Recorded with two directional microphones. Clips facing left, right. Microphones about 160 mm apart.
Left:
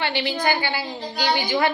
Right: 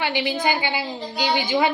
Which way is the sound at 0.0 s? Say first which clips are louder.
Right 1 dB; 15° right (ahead or behind).